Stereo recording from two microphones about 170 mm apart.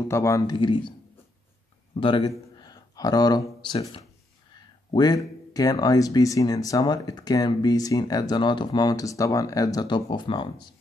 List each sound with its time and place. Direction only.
0.1 s speech: 15° left (ahead or behind)
2.0 s speech: 30° left (ahead or behind)
4.9 s speech: 25° left (ahead or behind)